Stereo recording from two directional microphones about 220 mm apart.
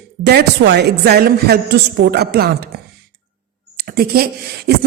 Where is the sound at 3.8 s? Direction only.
45° right (ahead or behind).